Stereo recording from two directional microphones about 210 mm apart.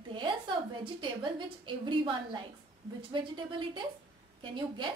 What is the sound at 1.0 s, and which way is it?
A woman's voice, 25° right (ahead or behind).